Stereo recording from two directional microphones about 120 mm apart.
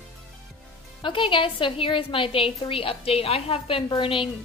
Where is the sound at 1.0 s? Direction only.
45° left (ahead or behind).